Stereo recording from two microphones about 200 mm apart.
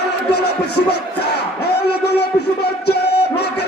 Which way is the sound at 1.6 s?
55° left (ahead or behind).